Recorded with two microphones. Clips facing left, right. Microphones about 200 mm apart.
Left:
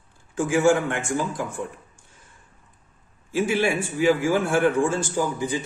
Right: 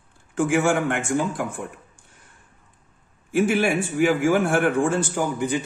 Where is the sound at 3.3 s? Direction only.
55° right (ahead or behind).